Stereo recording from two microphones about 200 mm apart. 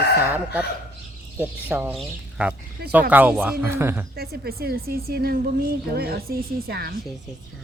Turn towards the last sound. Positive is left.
turn(degrees=-50)  # may be behind; listen again after turning